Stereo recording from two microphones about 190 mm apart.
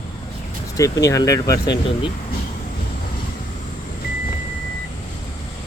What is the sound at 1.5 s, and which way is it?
Speech, 60° left (ahead or behind).